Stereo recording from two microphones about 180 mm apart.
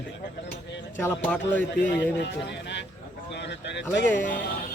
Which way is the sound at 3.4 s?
75° left (ahead or behind).